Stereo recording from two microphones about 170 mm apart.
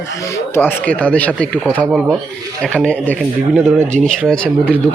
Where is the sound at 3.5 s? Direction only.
5° right (ahead or behind).